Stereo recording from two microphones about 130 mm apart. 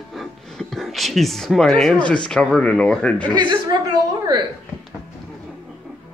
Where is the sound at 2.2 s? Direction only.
5° left (ahead or behind).